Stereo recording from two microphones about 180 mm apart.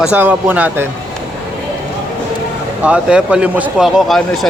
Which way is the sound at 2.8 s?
5° right (ahead or behind).